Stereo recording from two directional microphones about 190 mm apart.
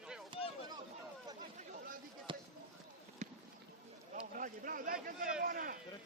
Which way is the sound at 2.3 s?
25° right (ahead or behind).